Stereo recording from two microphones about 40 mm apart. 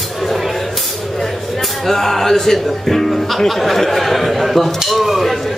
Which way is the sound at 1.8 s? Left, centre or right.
Centre.